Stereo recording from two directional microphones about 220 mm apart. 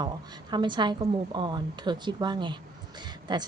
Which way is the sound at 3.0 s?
20° right (ahead or behind).